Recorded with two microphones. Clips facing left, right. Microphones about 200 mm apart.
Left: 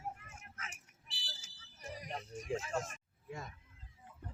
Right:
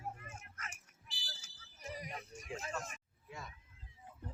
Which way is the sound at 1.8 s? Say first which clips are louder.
Left 1 dB; 55° left (ahead or behind).